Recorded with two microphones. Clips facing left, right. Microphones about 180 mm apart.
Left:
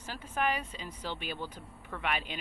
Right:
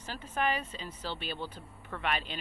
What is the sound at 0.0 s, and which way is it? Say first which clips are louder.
A woman's voice: even; 10° left (ahead or behind).